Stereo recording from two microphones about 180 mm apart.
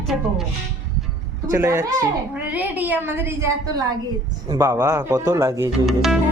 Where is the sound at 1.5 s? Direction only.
15° right (ahead or behind).